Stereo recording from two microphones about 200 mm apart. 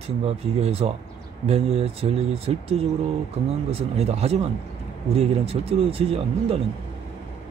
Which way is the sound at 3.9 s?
30° right (ahead or behind).